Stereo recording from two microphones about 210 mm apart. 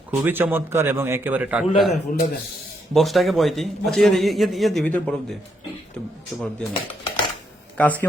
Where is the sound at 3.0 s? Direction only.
Centre (ahead or behind).